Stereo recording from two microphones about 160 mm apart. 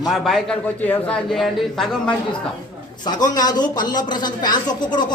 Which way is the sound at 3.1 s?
25° left (ahead or behind).